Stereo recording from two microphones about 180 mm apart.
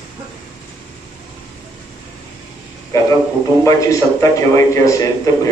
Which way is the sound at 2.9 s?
20° left (ahead or behind).